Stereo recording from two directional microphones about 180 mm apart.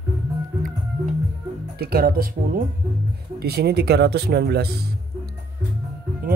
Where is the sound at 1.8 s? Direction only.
60° right (ahead or behind).